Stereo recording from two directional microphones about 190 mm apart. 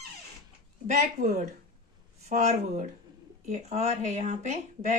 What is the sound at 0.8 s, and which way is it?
Speech, 40° right (ahead or behind).